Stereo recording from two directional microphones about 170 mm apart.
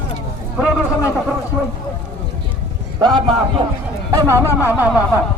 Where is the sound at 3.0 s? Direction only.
30° right (ahead or behind).